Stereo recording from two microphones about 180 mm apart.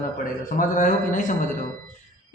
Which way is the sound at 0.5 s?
45° left (ahead or behind).